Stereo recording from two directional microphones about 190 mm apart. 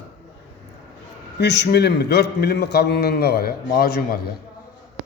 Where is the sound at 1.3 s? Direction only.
65° left (ahead or behind).